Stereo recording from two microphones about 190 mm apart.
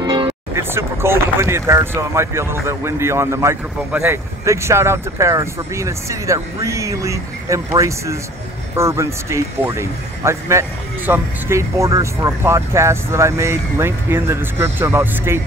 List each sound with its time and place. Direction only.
0.0 s music: 25° right (ahead or behind)
0.6 s speech: 15° right (ahead or behind)